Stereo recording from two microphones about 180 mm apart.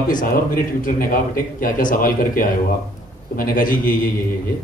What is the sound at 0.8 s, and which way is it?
A man's voice, 50° left (ahead or behind).